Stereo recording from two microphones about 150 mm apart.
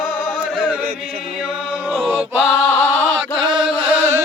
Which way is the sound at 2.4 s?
10° left (ahead or behind).